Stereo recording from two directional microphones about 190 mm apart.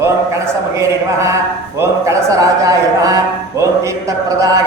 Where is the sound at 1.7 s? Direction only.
15° right (ahead or behind).